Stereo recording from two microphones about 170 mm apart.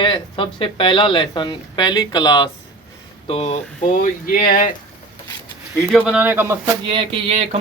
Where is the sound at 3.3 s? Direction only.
40° left (ahead or behind); by 4.7 s 55° left (ahead or behind).